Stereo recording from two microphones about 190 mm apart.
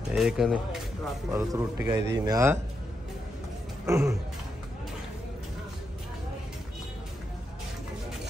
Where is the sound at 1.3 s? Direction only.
15° right (ahead or behind).